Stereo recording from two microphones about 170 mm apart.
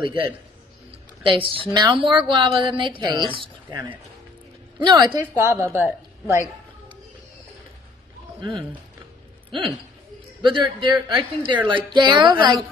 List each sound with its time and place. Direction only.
0.0 s a woman's voice: 30° right (ahead or behind)
4.8 s a woman's voice: 25° right (ahead or behind)
5.2 s a woman's voice: 15° right (ahead or behind)
8.4 s a man's voice: 30° right (ahead or behind)